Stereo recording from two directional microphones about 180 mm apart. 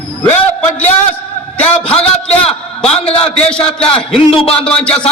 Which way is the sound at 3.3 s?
5° left (ahead or behind).